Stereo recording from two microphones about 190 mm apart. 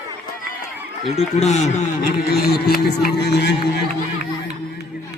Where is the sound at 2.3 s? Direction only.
55° left (ahead or behind).